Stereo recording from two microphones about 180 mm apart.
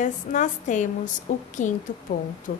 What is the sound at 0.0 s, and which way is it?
A woman's voice, 45° left (ahead or behind).